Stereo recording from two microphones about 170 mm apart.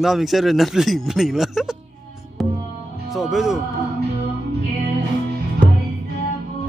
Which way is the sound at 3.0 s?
Centre (ahead or behind).